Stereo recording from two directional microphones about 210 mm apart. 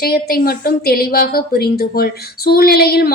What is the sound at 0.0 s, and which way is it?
A woman's voice, 45° left (ahead or behind).